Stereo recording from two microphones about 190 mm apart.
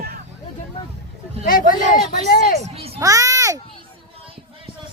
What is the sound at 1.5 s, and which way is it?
Speech, 50° left (ahead or behind).